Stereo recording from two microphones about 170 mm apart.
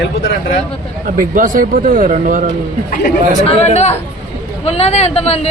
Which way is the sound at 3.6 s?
40° left (ahead or behind).